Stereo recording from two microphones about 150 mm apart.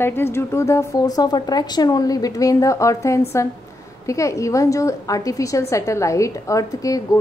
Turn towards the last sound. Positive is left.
turn(degrees=25)  # may be behind; listen again after turning